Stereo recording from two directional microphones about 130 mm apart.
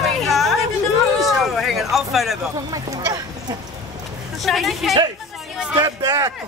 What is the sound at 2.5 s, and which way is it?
Speech, 30° right (ahead or behind).